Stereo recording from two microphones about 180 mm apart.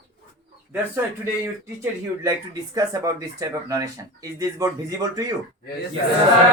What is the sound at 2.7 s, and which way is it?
Speech, 20° right (ahead or behind).